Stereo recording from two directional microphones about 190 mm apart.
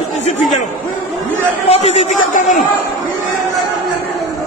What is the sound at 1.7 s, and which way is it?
Speech, 35° left (ahead or behind).